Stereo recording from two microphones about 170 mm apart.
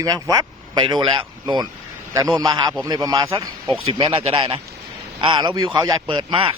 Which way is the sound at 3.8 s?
35° right (ahead or behind).